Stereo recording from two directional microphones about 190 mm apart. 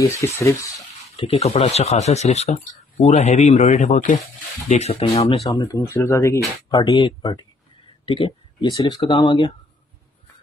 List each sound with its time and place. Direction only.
0.0 s speech: 15° left (ahead or behind)
1.1 s speech: 30° left (ahead or behind)
5.4 s speech: 15° left (ahead or behind)